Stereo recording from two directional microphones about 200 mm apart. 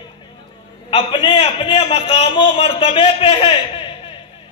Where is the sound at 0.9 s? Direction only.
25° left (ahead or behind).